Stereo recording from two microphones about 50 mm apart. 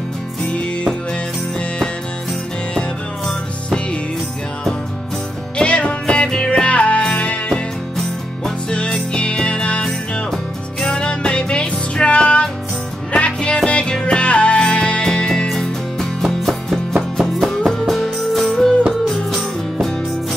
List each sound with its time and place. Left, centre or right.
5.6 s music: left
8.6 s music: centre
10.9 s music: centre